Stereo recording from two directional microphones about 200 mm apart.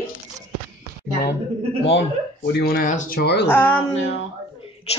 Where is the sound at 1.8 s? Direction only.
60° left (ahead or behind).